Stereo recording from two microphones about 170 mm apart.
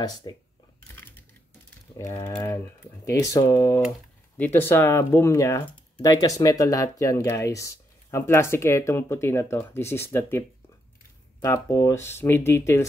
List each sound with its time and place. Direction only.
0.3 s speech: 25° left (ahead or behind)
2.0 s speech: 15° left (ahead or behind)
11.4 s speech: 20° left (ahead or behind)